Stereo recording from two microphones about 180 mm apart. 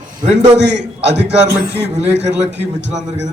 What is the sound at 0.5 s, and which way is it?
Speech, 75° right (ahead or behind).